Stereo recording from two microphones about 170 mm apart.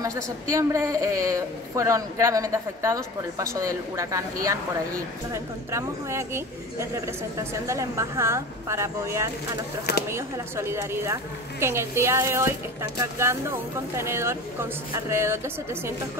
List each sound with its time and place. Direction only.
0.0 s a woman's voice: 20° right (ahead or behind)
5.3 s a woman's voice: 15° right (ahead or behind)